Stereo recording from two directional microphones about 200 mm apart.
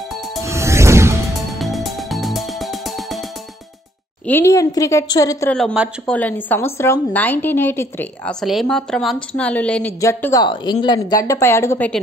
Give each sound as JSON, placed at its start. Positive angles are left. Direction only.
{"t": 0.4, "sound": "music", "side_deg": -15}
{"t": 1.6, "sound": "music", "side_deg": 0}
{"t": 4.3, "sound": "a woman's voice", "side_deg": 15}
{"t": 5.5, "sound": "a woman's voice", "side_deg": 5}